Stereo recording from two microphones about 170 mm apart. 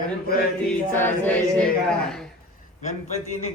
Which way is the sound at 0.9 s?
10° left (ahead or behind).